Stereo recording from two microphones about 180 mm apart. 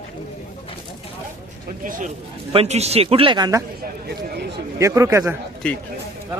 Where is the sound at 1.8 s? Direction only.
45° right (ahead or behind); by 3.6 s 20° right (ahead or behind).